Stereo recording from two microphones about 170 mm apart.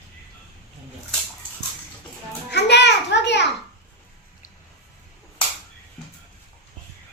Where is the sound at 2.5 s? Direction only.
90° left.